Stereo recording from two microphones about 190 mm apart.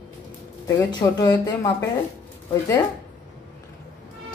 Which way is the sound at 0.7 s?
15° left (ahead or behind).